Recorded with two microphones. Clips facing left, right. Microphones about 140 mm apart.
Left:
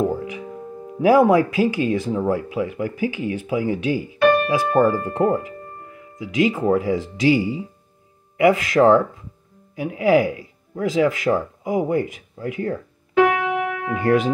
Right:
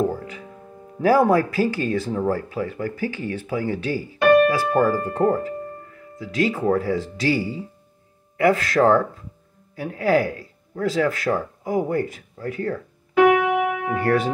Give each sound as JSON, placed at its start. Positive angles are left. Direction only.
{"t": 0.0, "sound": "music", "side_deg": 15}
{"t": 1.0, "sound": "speech", "side_deg": 15}
{"t": 13.9, "sound": "speech", "side_deg": 15}